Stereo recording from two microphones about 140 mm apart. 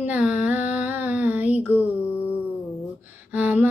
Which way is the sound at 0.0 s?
10° right (ahead or behind).